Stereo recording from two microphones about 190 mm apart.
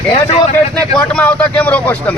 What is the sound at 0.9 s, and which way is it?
A man's voice, 5° left (ahead or behind).